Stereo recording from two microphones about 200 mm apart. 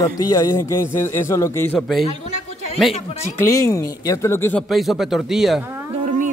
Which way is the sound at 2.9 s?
35° left (ahead or behind).